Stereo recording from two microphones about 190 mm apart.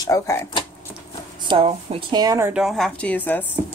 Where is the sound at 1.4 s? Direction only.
30° right (ahead or behind); by 3.5 s 10° left (ahead or behind).